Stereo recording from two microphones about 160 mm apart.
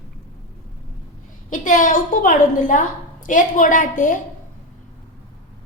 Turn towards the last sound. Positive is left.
turn(degrees=55)  # may be behind; listen again after turning